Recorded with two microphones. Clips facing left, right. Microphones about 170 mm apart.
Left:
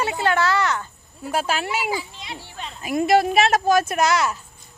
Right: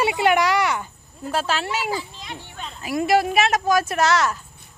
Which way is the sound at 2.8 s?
20° left (ahead or behind).